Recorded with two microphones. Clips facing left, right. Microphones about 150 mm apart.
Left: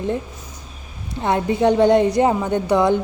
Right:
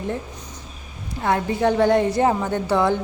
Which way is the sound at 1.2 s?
20° left (ahead or behind).